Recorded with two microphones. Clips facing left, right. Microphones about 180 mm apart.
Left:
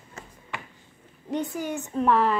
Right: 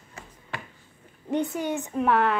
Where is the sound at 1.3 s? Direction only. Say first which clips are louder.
Right 2 dB; 25° right (ahead or behind).